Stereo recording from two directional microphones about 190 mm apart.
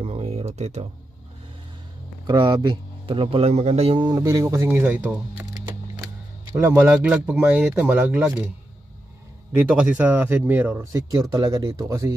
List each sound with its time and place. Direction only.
0.0 s a sound: 35° right (ahead or behind)
2.2 s a man's voice: 25° right (ahead or behind); by 5.5 s 10° right (ahead or behind)
6.5 s speech: 15° right (ahead or behind)
9.8 s speech: 10° right (ahead or behind)